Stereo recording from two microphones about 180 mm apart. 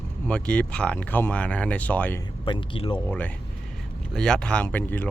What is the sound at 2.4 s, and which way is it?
Speech, 30° left (ahead or behind).